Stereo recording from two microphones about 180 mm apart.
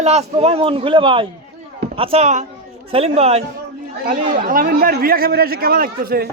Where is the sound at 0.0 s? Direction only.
35° right (ahead or behind).